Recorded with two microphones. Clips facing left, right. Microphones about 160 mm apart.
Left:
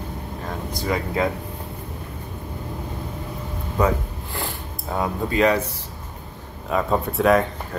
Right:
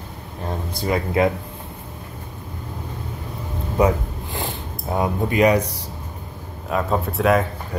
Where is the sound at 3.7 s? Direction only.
20° right (ahead or behind).